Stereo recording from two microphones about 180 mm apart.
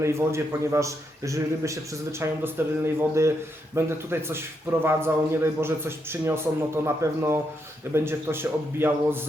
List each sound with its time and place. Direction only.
0.0 s speech: 15° right (ahead or behind)